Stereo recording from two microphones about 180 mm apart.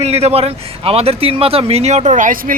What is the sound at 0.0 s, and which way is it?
A man's voice, 35° right (ahead or behind).